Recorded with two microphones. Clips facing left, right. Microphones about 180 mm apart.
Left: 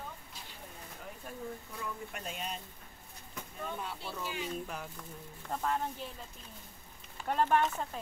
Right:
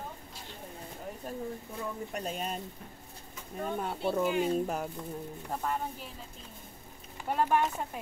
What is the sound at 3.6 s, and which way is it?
Speech, 50° right (ahead or behind).